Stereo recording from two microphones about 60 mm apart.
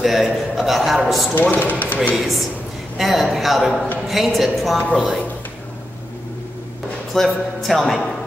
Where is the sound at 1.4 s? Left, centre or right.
Left.